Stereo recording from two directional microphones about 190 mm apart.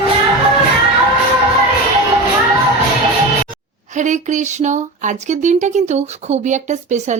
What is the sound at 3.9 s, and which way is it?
Speech, 40° right (ahead or behind).